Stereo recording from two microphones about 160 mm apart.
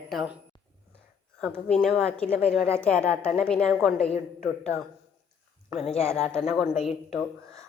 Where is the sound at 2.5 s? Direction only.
10° right (ahead or behind).